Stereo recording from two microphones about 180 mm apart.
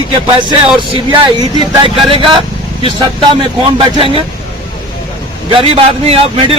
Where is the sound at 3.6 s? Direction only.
30° right (ahead or behind).